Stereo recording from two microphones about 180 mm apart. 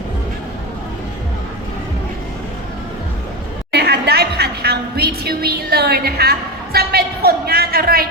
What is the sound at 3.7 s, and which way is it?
A woman's voice, 65° right (ahead or behind).